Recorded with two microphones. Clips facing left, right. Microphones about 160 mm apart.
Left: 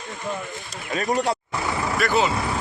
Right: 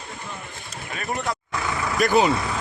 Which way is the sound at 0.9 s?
35° left (ahead or behind).